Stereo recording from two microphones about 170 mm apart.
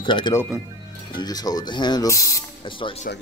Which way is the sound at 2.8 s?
35° left (ahead or behind).